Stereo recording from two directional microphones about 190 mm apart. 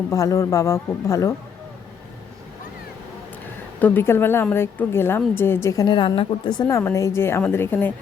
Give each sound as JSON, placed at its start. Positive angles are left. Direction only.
{"t": 0.1, "sound": "a woman's voice", "side_deg": 15}
{"t": 3.8, "sound": "a woman's voice", "side_deg": 10}